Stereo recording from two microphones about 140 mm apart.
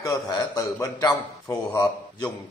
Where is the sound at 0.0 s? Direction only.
25° left (ahead or behind).